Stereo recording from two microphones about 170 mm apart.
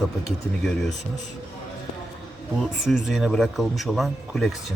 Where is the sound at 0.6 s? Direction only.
Centre (ahead or behind).